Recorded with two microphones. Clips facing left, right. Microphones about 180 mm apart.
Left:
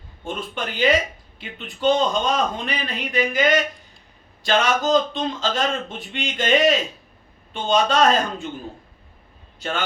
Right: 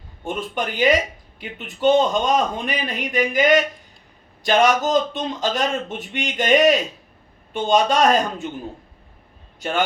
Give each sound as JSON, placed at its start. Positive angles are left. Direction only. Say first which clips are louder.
{"t": 0.3, "sound": "speech", "louder": "right 3 dB", "side_deg": -15}
{"t": 9.6, "sound": "speech", "louder": "right 5 dB", "side_deg": -15}